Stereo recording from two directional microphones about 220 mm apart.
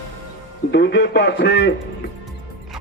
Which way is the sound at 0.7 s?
50° left (ahead or behind).